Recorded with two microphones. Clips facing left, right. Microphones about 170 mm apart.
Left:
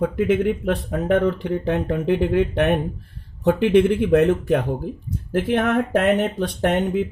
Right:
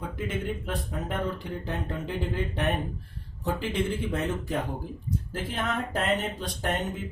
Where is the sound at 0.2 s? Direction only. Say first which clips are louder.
Left 11 dB; 70° left (ahead or behind).